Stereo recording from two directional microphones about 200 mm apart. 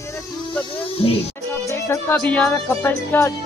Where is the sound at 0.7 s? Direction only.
30° left (ahead or behind).